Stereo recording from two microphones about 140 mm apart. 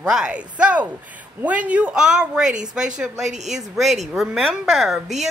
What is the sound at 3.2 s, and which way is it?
Speech, 55° right (ahead or behind).